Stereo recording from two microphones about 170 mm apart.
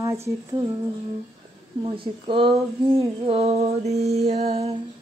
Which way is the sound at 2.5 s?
15° right (ahead or behind).